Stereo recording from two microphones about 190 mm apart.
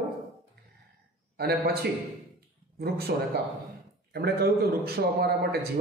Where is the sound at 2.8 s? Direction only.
55° right (ahead or behind).